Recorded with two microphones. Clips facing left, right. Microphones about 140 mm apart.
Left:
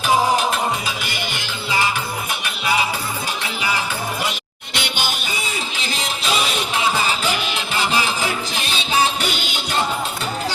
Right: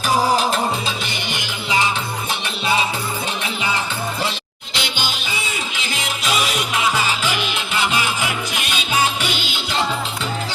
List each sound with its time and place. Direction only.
1.1 s music: 20° right (ahead or behind)
3.4 s music: 25° right (ahead or behind)
4.7 s music: 55° left (ahead or behind)
5.7 s music: 35° left (ahead or behind)